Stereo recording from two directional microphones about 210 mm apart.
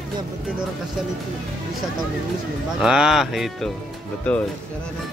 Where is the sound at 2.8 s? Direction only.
5° right (ahead or behind).